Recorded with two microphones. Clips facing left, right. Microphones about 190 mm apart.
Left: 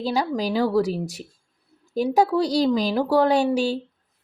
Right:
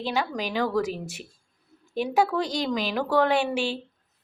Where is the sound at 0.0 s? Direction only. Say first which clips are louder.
Left 4 dB; 35° left (ahead or behind).